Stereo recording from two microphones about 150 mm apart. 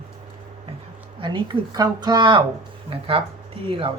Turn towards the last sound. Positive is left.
turn(degrees=-35)  # may be behind; listen again after turning